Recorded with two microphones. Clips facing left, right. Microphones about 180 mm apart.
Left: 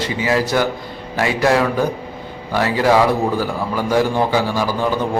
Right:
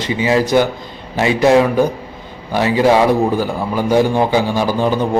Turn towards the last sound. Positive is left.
turn(degrees=-20)  # may be behind; listen again after turning